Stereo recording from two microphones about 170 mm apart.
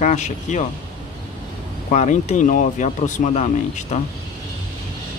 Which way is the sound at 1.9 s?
45° left (ahead or behind).